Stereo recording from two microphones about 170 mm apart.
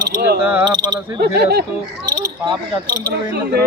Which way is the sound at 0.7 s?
70° right (ahead or behind).